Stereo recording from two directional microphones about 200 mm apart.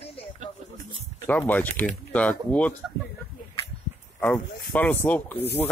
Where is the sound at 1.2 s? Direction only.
10° left (ahead or behind).